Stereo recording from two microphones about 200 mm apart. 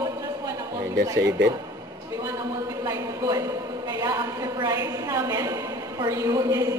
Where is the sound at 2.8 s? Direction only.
15° right (ahead or behind).